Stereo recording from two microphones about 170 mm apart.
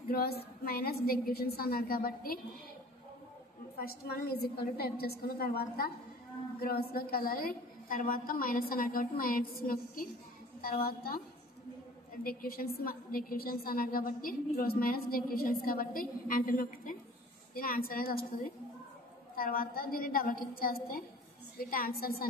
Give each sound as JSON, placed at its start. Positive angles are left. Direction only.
{"t": 0.1, "sound": "a woman's voice", "side_deg": 65}
{"t": 3.7, "sound": "a woman's voice", "side_deg": 65}
{"t": 12.2, "sound": "a woman's voice", "side_deg": 60}
{"t": 19.3, "sound": "a woman's voice", "side_deg": 60}